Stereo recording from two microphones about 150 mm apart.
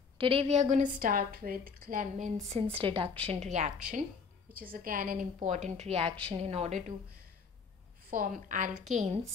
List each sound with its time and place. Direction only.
0.2 s a woman's voice: 40° right (ahead or behind); by 2.3 s 60° right (ahead or behind)
2.5 s a woman's voice: 40° right (ahead or behind)
4.6 s a woman's voice: 70° right (ahead or behind)
5.8 s a woman's voice: 45° right (ahead or behind)
8.1 s a woman's voice: 65° right (ahead or behind)